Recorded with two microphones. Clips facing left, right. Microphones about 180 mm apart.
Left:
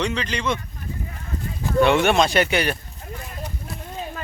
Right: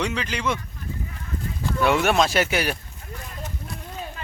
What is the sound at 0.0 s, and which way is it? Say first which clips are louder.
Speech: left 1 dB; 10° right (ahead or behind).